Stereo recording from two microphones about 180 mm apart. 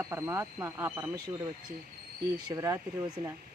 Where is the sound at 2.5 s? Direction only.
20° right (ahead or behind).